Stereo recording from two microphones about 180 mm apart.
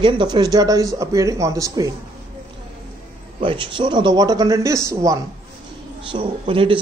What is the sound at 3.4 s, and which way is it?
Speech, 30° right (ahead or behind).